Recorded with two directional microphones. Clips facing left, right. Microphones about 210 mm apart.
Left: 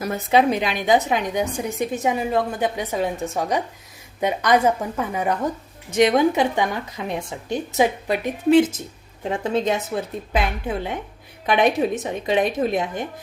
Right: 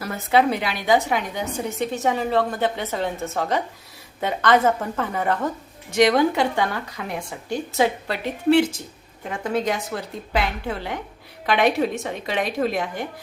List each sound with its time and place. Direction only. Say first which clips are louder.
0.0 s a woman's voice: left 1 dB; 15° left (ahead or behind)